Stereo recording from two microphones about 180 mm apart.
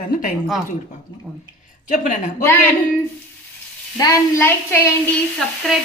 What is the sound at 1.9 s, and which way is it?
Speech, 45° left (ahead or behind).